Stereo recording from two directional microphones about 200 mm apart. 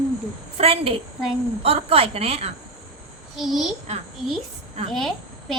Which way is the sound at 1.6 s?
30° right (ahead or behind).